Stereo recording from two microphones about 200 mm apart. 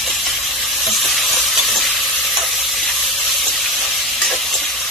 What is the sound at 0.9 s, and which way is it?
Stir, centre (ahead or behind).